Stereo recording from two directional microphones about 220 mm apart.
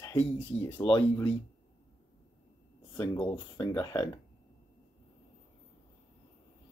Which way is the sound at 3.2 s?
15° left (ahead or behind).